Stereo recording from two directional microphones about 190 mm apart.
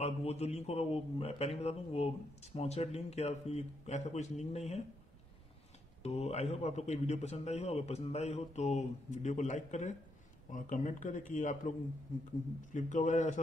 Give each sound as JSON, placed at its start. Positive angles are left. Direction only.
{"t": 0.0, "sound": "a man's voice", "side_deg": 35}
{"t": 6.0, "sound": "a man's voice", "side_deg": 35}
{"t": 12.7, "sound": "a man's voice", "side_deg": 40}